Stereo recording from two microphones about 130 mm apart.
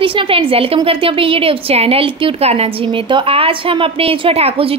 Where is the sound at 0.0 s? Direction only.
40° right (ahead or behind).